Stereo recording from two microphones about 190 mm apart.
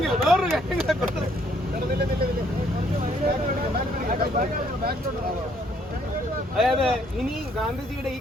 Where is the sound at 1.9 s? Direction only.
55° right (ahead or behind).